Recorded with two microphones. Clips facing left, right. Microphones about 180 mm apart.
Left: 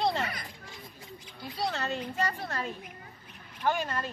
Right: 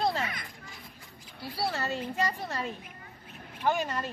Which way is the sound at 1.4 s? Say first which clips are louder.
Right 1 dB; 5° right (ahead or behind).